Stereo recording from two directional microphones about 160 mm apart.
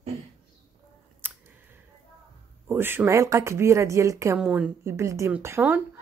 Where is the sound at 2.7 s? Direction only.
15° right (ahead or behind).